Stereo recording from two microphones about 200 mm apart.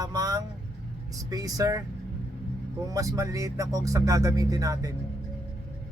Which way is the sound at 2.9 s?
15° right (ahead or behind).